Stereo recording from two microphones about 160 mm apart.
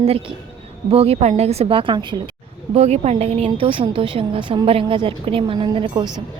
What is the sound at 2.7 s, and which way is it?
A woman's voice, 40° right (ahead or behind).